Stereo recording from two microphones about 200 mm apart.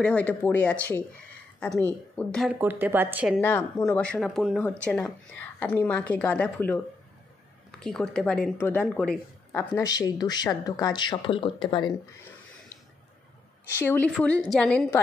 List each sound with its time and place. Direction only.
0.0 s a woman's voice: 5° left (ahead or behind)
2.6 s speech: 10° right (ahead or behind)
3.3 s a woman's voice: 10° left (ahead or behind)
7.8 s speech: 5° left (ahead or behind); by 12.0 s 25° left (ahead or behind)
13.7 s speech: 10° left (ahead or behind)